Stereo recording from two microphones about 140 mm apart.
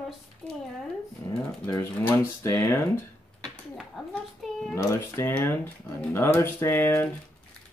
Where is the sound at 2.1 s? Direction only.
20° left (ahead or behind).